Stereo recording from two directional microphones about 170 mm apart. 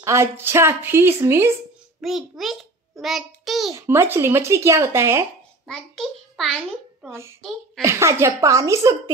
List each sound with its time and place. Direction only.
0.0 s speech: 15° right (ahead or behind)
2.0 s a child's voice: centre (ahead or behind)
3.7 s speech: 15° right (ahead or behind)
5.7 s a child's voice: centre (ahead or behind)
7.1 s speech: 15° right (ahead or behind)